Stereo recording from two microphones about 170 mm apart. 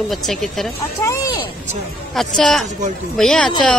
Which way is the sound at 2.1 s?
Centre (ahead or behind).